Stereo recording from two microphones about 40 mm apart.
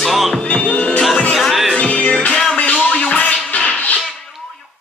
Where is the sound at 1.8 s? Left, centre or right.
Left.